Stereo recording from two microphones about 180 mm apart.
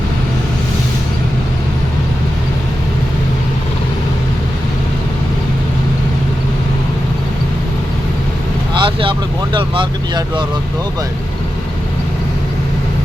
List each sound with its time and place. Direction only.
8.8 s speech: 25° right (ahead or behind)